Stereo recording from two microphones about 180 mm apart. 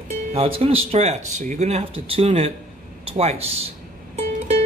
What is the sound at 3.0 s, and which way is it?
Music, 35° right (ahead or behind).